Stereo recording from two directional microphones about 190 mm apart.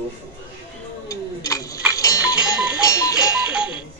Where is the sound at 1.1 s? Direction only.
15° left (ahead or behind).